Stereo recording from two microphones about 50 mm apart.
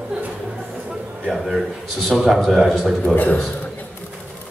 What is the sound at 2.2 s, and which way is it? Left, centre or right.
Speech, centre.